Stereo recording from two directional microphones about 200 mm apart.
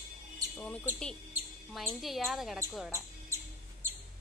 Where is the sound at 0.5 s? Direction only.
5° left (ahead or behind).